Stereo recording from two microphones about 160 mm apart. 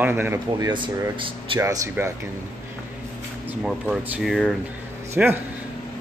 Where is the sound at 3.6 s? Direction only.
5° right (ahead or behind).